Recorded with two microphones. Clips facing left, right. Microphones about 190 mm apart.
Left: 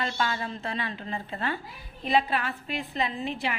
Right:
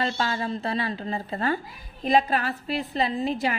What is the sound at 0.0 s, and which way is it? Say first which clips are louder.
A woman's voice: right 3 dB; 30° right (ahead or behind).